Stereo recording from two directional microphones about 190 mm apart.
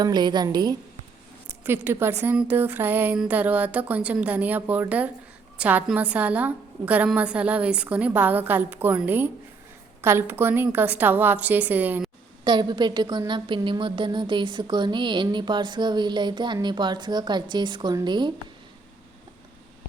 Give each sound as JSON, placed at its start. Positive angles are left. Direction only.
{"t": 0.0, "sound": "a woman's voice", "side_deg": -20}
{"t": 12.5, "sound": "a woman's voice", "side_deg": -25}